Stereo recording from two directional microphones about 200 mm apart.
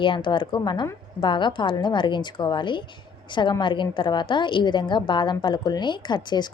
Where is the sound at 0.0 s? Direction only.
25° left (ahead or behind).